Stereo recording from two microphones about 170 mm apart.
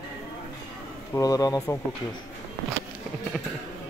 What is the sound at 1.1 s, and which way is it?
Speech, 20° left (ahead or behind).